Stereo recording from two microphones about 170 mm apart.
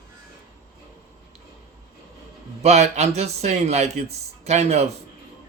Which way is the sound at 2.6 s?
40° right (ahead or behind).